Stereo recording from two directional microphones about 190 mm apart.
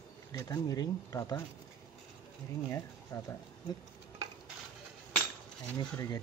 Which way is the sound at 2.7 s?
15° left (ahead or behind).